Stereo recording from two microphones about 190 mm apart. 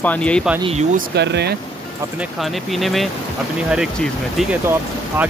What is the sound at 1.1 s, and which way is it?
Speech, 60° right (ahead or behind).